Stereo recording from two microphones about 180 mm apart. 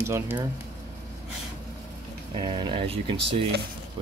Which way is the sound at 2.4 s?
25° right (ahead or behind).